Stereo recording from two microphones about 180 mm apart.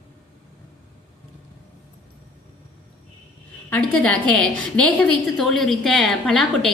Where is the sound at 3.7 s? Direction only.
5° left (ahead or behind).